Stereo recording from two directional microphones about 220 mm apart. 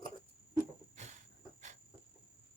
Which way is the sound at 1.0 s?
30° right (ahead or behind).